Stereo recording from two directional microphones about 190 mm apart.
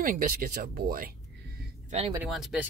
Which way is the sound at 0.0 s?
45° right (ahead or behind).